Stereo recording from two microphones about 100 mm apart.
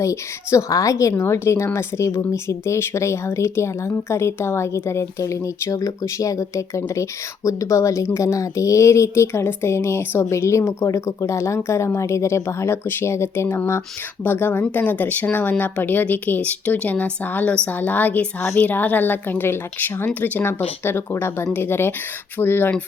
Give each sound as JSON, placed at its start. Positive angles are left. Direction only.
{"t": 0.0, "sound": "a woman's voice", "side_deg": 30}